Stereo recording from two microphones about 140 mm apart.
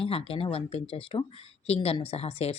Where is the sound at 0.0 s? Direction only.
45° left (ahead or behind).